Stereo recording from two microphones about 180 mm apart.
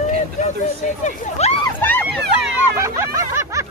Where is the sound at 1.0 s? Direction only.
35° left (ahead or behind).